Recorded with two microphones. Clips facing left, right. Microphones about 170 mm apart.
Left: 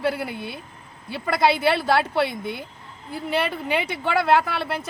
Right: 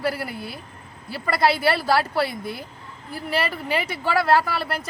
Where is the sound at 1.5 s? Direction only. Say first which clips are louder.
Left 1 dB; 20° left (ahead or behind).